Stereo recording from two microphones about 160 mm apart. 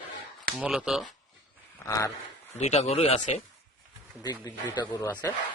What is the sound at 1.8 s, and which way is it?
Speech, 20° left (ahead or behind).